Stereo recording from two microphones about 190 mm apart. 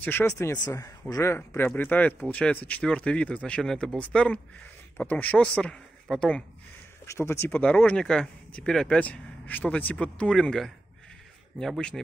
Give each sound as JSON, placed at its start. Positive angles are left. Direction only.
{"t": 0.0, "sound": "speech", "side_deg": 10}